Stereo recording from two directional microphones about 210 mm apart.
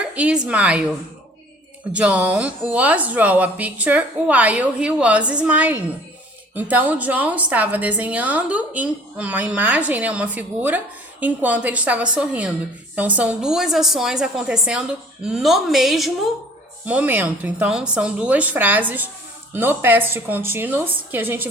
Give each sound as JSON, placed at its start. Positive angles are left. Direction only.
{"t": 0.1, "sound": "a woman's voice", "side_deg": -5}
{"t": 1.9, "sound": "a woman's voice", "side_deg": -5}